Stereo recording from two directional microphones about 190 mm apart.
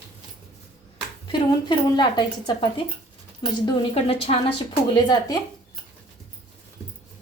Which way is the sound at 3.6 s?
30° left (ahead or behind).